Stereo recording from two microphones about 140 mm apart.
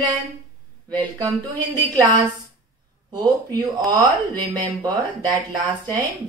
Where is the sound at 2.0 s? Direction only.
25° right (ahead or behind).